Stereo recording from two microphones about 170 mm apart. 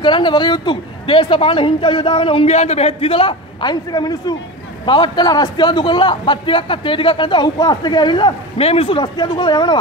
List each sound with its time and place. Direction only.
0.0 s a man's voice: 25° left (ahead or behind)